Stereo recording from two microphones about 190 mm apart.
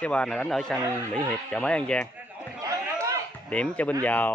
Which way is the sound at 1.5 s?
5° left (ahead or behind).